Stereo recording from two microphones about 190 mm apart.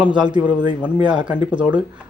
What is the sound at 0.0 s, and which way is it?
Speech, 5° right (ahead or behind).